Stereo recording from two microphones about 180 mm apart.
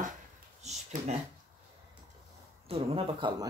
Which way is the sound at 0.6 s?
40° right (ahead or behind).